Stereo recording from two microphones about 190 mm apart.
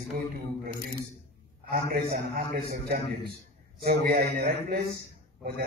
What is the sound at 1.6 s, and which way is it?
A man's voice, 50° right (ahead or behind).